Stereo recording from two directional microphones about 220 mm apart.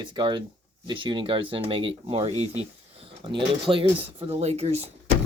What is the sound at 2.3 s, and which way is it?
Speech, 15° left (ahead or behind).